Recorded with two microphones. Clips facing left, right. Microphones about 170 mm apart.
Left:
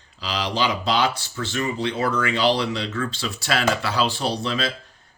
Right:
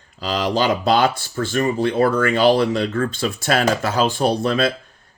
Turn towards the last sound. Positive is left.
turn(degrees=-55)  # may be behind; listen again after turning